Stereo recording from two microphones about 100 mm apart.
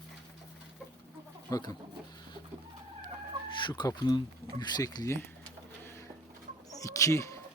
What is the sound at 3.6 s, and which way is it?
Speech, 45° left (ahead or behind).